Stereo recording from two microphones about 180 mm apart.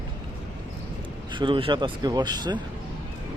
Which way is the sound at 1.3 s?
25° right (ahead or behind).